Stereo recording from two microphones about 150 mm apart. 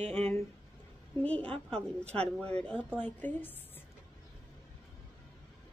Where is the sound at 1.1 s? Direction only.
10° left (ahead or behind).